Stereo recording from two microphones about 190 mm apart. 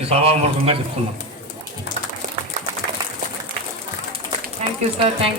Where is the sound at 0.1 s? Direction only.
30° right (ahead or behind).